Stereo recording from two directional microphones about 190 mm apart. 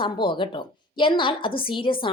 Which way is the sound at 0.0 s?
25° left (ahead or behind).